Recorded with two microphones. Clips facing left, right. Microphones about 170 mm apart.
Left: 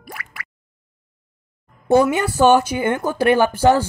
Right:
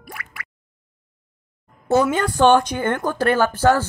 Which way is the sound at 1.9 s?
15° left (ahead or behind).